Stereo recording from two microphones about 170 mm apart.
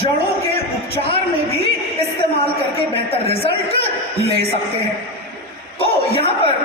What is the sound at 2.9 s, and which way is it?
A man's voice, 35° left (ahead or behind).